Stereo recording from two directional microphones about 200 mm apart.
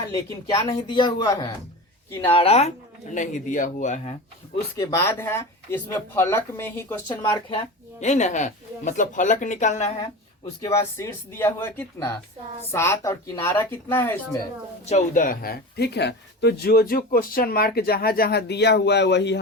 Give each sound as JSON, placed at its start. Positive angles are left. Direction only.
{"t": 0.7, "sound": "speech", "side_deg": 20}
{"t": 4.8, "sound": "speech", "side_deg": 15}
{"t": 7.2, "sound": "speech", "side_deg": 25}
{"t": 8.0, "sound": "speech", "side_deg": 35}
{"t": 10.6, "sound": "speech", "side_deg": 15}
{"t": 14.8, "sound": "speech", "side_deg": 40}